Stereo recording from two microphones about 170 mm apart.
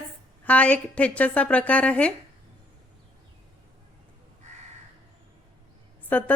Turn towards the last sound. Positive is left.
turn(degrees=10)  # may be behind; listen again after turning